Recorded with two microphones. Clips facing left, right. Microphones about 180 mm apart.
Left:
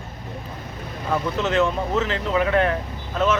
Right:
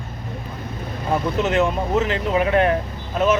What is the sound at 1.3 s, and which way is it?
Speech, 10° right (ahead or behind).